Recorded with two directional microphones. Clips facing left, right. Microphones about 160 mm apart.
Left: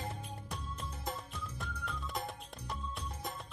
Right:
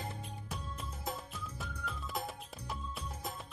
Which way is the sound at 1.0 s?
Centre (ahead or behind).